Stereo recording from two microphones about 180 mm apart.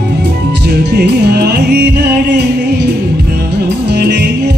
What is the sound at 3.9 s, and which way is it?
Music, 65° right (ahead or behind).